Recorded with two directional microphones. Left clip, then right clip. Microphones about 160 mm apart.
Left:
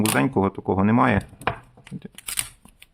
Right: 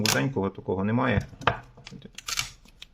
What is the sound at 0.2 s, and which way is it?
Speech, 40° left (ahead or behind).